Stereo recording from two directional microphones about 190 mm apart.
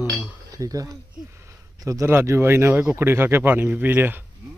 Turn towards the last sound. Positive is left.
turn(degrees=-10)  # may be behind; listen again after turning